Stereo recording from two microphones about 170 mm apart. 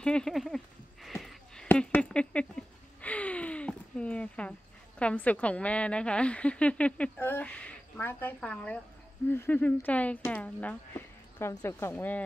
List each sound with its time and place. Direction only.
0.0 s speech: 5° left (ahead or behind)
1.0 s a sound: centre (ahead or behind)
9.3 s speech: 10° left (ahead or behind)